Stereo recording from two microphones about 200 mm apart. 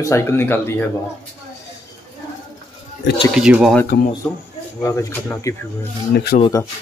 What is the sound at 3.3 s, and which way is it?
Speech, 5° right (ahead or behind).